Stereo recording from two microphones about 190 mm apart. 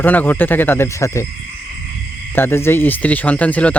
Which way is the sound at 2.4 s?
10° left (ahead or behind).